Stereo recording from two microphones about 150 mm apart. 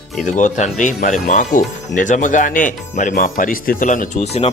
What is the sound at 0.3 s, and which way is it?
Speech, 55° left (ahead or behind).